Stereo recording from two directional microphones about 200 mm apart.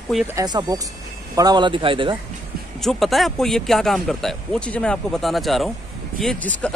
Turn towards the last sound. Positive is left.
turn(degrees=5)  # may be behind; listen again after turning